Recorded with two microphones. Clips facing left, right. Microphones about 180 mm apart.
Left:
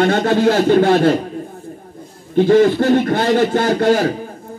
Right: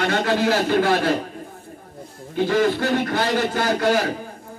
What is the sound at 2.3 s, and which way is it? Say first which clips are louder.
Speech: left 8 dB; 50° left (ahead or behind).